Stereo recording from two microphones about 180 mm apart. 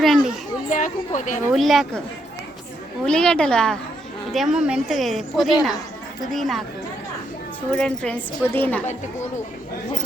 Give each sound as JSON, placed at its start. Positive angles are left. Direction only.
{"t": 0.0, "sound": "children playing", "side_deg": 0}
{"t": 0.7, "sound": "speech", "side_deg": 45}
{"t": 1.5, "sound": "a woman's voice", "side_deg": 0}
{"t": 3.1, "sound": "a woman's voice", "side_deg": 5}
{"t": 7.7, "sound": "a woman's voice", "side_deg": 5}